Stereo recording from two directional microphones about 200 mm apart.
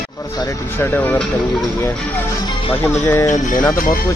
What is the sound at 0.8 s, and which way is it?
Speech, 10° left (ahead or behind).